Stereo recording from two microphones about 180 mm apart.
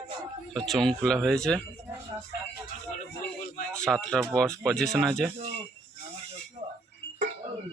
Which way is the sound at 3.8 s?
5° left (ahead or behind).